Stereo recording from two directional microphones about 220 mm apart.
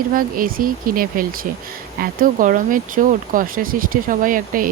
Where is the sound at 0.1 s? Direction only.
40° right (ahead or behind).